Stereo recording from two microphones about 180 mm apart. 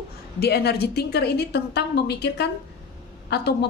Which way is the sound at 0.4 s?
60° left (ahead or behind).